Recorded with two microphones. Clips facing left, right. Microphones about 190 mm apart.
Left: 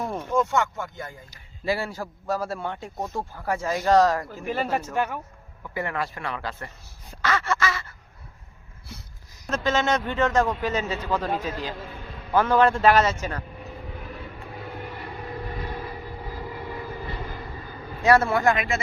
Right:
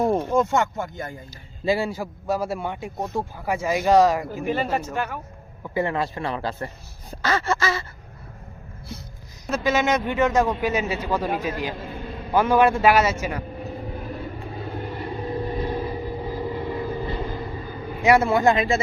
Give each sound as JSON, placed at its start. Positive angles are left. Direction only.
{"t": 0.0, "sound": "a sound", "side_deg": -35}
{"t": 0.5, "sound": "speech", "side_deg": -45}
{"t": 1.6, "sound": "a man's voice", "side_deg": -15}
{"t": 4.4, "sound": "speech", "side_deg": 0}
{"t": 4.9, "sound": "speech", "side_deg": 15}
{"t": 5.6, "sound": "speech", "side_deg": -25}
{"t": 7.1, "sound": "gasp", "side_deg": -35}
{"t": 9.5, "sound": "a man's voice", "side_deg": -10}
{"t": 11.9, "sound": "a sound", "side_deg": -35}
{"t": 12.3, "sound": "a man's voice", "side_deg": -10}
{"t": 13.6, "sound": "vehicle", "side_deg": -35}